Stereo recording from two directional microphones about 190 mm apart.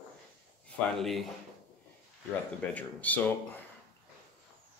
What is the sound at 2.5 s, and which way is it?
Speech, 10° left (ahead or behind).